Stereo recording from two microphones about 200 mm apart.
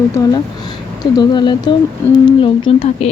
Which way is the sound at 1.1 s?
20° left (ahead or behind).